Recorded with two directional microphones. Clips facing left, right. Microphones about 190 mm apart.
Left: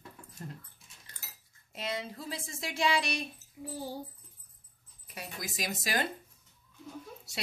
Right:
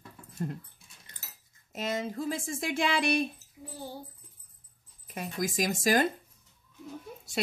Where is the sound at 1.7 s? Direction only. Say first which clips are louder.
Right 5 dB; 45° right (ahead or behind).